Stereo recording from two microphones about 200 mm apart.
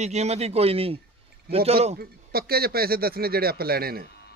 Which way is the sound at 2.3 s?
50° right (ahead or behind).